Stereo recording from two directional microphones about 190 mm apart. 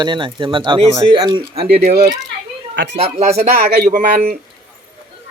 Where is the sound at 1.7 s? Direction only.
35° right (ahead or behind).